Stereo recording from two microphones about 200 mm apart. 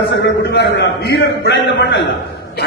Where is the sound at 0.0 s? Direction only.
60° left (ahead or behind).